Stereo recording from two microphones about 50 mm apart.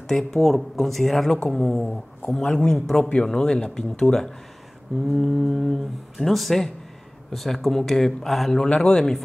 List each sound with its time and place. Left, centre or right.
0.1 s speech: centre
3.0 s speech: left
3.3 s speech: centre
5.0 s speech: centre